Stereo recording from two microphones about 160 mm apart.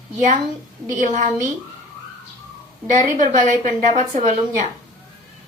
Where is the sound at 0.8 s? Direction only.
50° right (ahead or behind).